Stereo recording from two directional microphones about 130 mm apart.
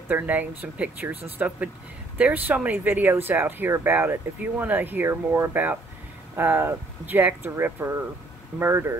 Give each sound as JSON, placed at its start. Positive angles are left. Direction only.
{"t": 0.1, "sound": "speech", "side_deg": -15}